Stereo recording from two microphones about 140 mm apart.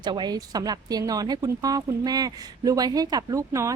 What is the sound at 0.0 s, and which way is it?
Speech, 30° right (ahead or behind).